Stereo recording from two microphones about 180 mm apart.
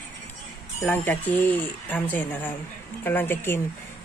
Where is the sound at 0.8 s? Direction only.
10° left (ahead or behind).